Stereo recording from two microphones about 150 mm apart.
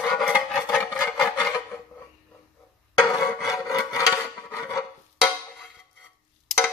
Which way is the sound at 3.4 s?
20° left (ahead or behind).